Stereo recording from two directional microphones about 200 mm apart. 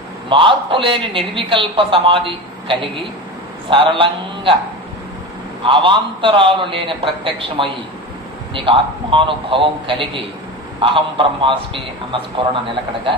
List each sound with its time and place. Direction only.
0.3 s a man's voice: 25° right (ahead or behind)
5.6 s a man's voice: 25° right (ahead or behind)